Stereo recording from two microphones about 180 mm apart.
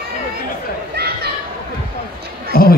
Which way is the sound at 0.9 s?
60° right (ahead or behind).